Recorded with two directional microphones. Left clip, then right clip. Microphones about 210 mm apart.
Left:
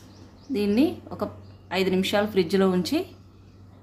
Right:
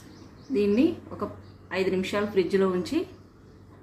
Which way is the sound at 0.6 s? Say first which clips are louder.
Even; 45° left (ahead or behind).